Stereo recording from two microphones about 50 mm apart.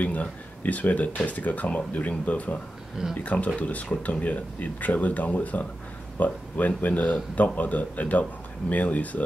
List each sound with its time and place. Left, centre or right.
0.0 s speech: left